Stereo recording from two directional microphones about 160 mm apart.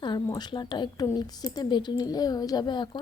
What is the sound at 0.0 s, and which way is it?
A woman's voice, 25° left (ahead or behind).